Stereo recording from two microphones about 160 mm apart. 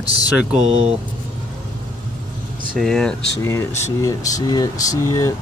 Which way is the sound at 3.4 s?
15° left (ahead or behind).